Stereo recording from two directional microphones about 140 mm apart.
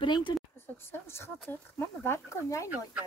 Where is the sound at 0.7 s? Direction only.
15° left (ahead or behind).